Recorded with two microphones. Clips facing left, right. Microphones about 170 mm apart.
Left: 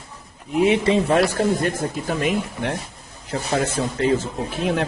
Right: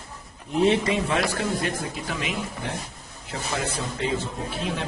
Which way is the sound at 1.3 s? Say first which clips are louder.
Left 6 dB; 45° left (ahead or behind).